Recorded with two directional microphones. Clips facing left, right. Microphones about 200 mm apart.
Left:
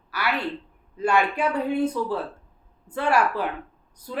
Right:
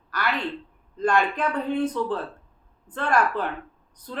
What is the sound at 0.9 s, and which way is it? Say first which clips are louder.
Speech: even; 10° left (ahead or behind).